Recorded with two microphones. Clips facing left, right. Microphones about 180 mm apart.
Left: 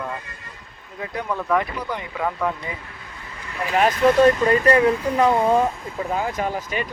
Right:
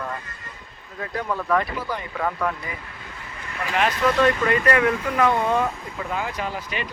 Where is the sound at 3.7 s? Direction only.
40° left (ahead or behind).